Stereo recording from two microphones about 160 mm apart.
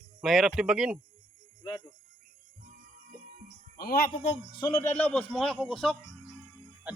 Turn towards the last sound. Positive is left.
turn(degrees=5)  # may be behind; listen again after turning